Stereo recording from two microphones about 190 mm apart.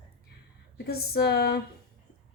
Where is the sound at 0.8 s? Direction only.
55° left (ahead or behind).